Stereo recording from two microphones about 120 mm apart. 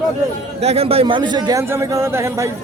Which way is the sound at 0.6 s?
55° right (ahead or behind).